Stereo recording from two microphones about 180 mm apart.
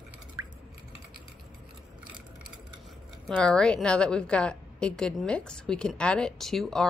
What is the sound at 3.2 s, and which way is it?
A woman's voice, 5° left (ahead or behind).